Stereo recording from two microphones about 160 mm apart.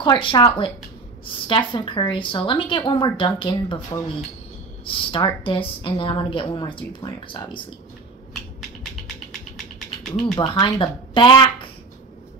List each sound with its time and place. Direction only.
0.0 s a woman's voice: 30° left (ahead or behind)
4.8 s a woman's voice: 30° left (ahead or behind)
8.3 s a sound: centre (ahead or behind)
10.3 s speech: 30° left (ahead or behind)